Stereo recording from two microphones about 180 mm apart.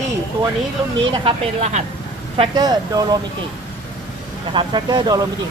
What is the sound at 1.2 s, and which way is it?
Speech, 40° right (ahead or behind).